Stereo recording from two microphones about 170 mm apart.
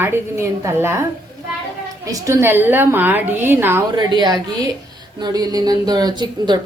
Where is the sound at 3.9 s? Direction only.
25° right (ahead or behind).